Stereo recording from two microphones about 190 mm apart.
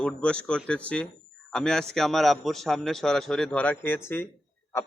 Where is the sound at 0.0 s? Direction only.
5° left (ahead or behind).